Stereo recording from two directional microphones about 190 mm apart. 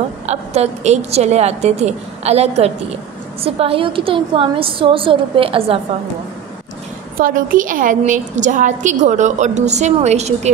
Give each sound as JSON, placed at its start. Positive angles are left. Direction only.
{"t": 0.3, "sound": "a woman's voice", "side_deg": -35}
{"t": 7.2, "sound": "a woman's voice", "side_deg": -50}